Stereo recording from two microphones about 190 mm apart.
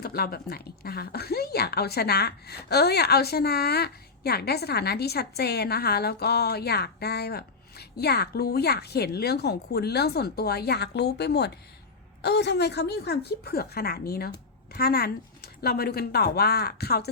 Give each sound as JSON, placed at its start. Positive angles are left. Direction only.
{"t": 0.0, "sound": "a woman's voice", "side_deg": 55}